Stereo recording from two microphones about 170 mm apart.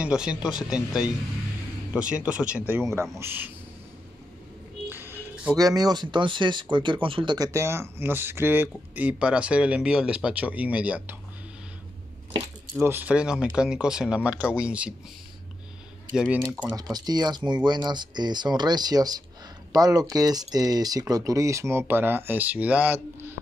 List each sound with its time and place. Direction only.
0.0 s speech: 5° right (ahead or behind)
4.8 s music: 10° right (ahead or behind)
5.6 s speech: 20° right (ahead or behind)
12.7 s speech: 10° right (ahead or behind)
16.2 s speech: 5° right (ahead or behind)
16.6 s speech: 20° right (ahead or behind)